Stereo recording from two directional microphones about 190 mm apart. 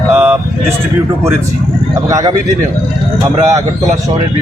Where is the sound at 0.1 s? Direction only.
10° right (ahead or behind).